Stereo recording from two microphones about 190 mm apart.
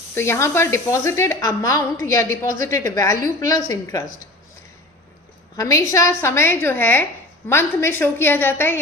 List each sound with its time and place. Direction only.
0.1 s a woman's voice: 15° left (ahead or behind)
5.5 s a woman's voice: 15° left (ahead or behind)